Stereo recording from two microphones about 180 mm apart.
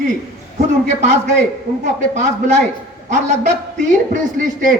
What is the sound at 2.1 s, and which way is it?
A man's voice, 40° right (ahead or behind).